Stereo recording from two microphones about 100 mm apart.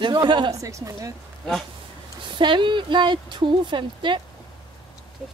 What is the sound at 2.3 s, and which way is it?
Speech, 55° right (ahead or behind).